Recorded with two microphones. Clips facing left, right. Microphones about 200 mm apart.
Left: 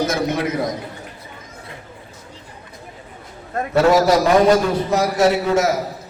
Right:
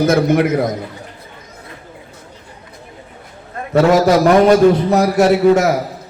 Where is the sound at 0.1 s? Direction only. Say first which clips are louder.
Right 8 dB; 60° right (ahead or behind).